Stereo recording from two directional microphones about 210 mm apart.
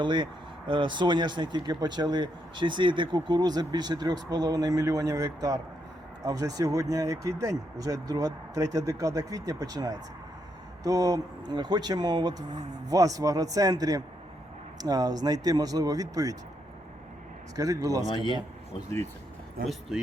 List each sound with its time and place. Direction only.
0.0 s speech: 20° right (ahead or behind)
17.6 s speech: 15° right (ahead or behind)
18.1 s speech: 20° left (ahead or behind)